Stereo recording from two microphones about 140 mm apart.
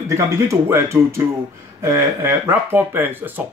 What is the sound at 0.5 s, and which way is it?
Speech, 20° right (ahead or behind).